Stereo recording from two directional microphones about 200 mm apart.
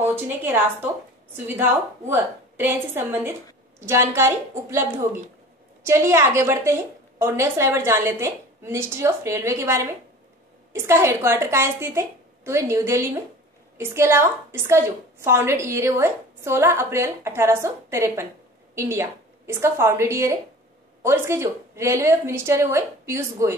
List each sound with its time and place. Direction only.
0.0 s a woman's voice: 10° right (ahead or behind)